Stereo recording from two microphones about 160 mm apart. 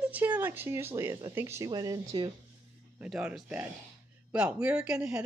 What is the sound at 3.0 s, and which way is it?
Speech, 5° right (ahead or behind).